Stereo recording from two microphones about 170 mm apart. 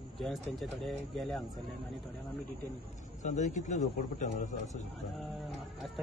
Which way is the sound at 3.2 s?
45° left (ahead or behind).